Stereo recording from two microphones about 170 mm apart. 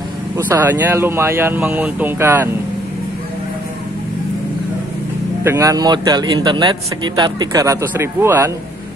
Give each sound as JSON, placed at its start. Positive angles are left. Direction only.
{"t": 0.4, "sound": "speech", "side_deg": -10}
{"t": 5.4, "sound": "a man's voice", "side_deg": -15}